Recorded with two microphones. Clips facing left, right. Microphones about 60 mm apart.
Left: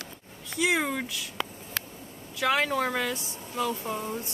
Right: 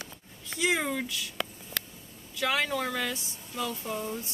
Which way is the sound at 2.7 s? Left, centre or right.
Left.